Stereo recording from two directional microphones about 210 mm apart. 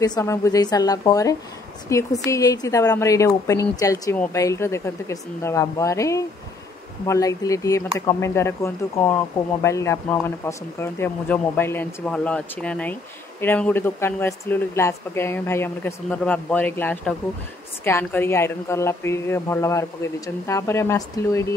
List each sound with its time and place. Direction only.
0.0 s speech: 15° left (ahead or behind)